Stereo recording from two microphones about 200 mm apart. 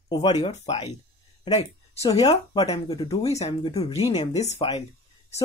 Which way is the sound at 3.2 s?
30° left (ahead or behind).